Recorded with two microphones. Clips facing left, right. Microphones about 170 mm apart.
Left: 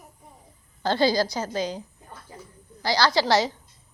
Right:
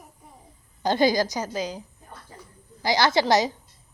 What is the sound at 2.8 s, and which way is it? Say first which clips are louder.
Speech: right 1 dB; 20° right (ahead or behind).